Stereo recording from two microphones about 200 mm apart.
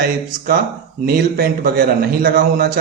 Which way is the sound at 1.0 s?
50° right (ahead or behind).